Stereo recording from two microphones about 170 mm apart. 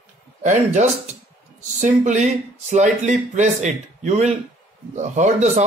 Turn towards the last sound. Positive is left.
turn(degrees=-40)  # may be behind; listen again after turning